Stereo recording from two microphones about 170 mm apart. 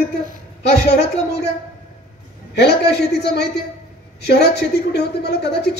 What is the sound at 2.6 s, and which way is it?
A woman's voice, 75° left (ahead or behind).